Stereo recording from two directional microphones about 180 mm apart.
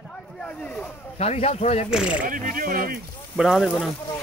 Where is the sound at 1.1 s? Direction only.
35° left (ahead or behind).